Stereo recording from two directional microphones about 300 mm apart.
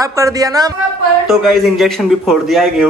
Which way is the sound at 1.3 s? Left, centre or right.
Centre.